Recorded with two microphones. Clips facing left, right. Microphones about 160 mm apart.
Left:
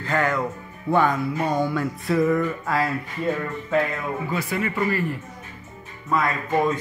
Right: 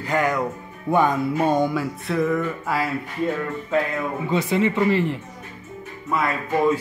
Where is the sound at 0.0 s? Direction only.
10° right (ahead or behind).